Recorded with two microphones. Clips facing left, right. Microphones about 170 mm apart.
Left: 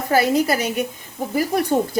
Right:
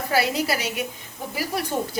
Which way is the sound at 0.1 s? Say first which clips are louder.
Left 6 dB; 50° left (ahead or behind).